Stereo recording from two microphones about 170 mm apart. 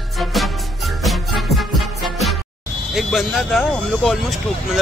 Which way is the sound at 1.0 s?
Centre (ahead or behind).